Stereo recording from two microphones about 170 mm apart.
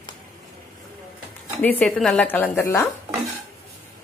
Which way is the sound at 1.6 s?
10° left (ahead or behind).